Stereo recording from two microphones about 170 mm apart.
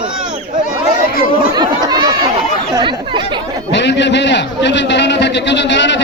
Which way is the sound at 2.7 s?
25° right (ahead or behind).